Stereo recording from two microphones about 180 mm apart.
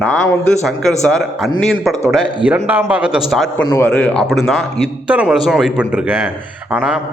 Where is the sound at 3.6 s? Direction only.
15° left (ahead or behind).